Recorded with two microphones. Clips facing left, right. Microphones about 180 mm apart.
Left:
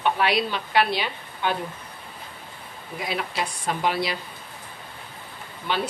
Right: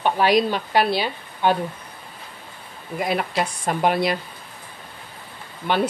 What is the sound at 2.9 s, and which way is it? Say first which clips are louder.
Speech: right 6 dB; 55° right (ahead or behind).